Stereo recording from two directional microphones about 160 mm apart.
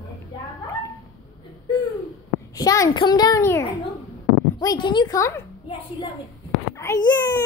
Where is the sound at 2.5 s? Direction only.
20° left (ahead or behind).